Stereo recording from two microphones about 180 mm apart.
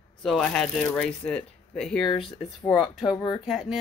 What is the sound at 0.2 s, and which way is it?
Speech, 5° left (ahead or behind).